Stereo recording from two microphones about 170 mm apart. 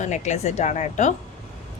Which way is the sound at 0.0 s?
45° left (ahead or behind).